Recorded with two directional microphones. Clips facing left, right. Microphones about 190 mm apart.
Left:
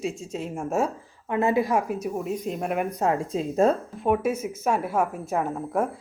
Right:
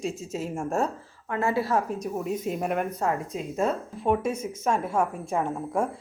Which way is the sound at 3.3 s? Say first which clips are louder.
Left 6 dB; 35° left (ahead or behind).